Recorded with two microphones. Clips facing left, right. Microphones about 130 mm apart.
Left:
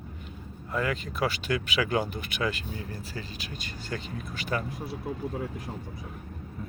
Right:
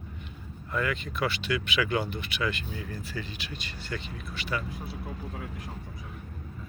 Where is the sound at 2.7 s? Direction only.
30° left (ahead or behind).